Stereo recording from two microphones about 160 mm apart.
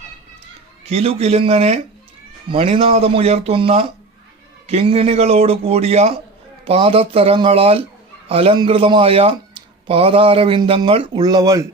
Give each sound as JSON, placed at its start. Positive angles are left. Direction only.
{"t": 0.9, "sound": "speech", "side_deg": -40}